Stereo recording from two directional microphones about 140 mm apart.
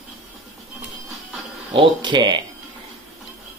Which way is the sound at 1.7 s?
35° right (ahead or behind).